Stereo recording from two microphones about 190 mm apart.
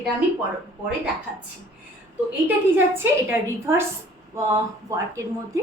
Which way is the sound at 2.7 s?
10° right (ahead or behind).